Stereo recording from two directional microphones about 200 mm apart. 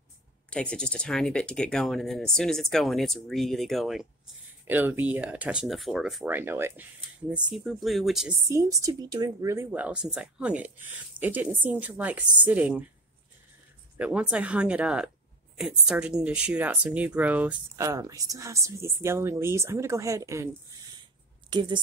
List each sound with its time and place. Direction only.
0.5 s speech: 5° left (ahead or behind)
8.5 s speech: 15° right (ahead or behind)
13.9 s speech: 5° right (ahead or behind)
21.5 s a woman's voice: 25° right (ahead or behind)